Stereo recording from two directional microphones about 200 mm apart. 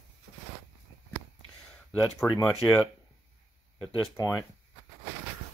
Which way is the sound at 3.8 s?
15° left (ahead or behind).